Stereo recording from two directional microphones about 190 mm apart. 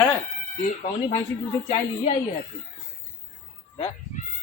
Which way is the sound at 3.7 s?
35° left (ahead or behind).